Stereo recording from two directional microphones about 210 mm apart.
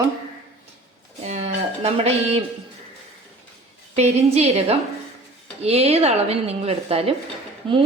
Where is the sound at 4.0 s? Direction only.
30° right (ahead or behind).